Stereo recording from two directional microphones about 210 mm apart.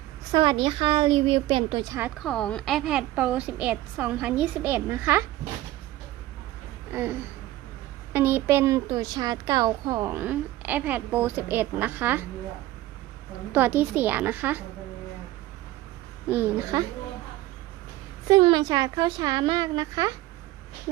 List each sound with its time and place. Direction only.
0.3 s a woman's voice: 20° right (ahead or behind)
6.9 s a woman's voice: 10° right (ahead or behind)
13.5 s a woman's voice: 10° right (ahead or behind)
16.3 s a woman's voice: 10° right (ahead or behind)
18.3 s a woman's voice: 25° right (ahead or behind)